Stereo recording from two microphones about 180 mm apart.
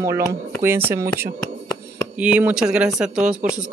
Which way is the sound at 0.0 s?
15° right (ahead or behind).